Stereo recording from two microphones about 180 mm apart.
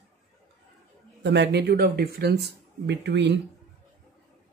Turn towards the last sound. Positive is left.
turn(degrees=-70)  # may be behind; listen again after turning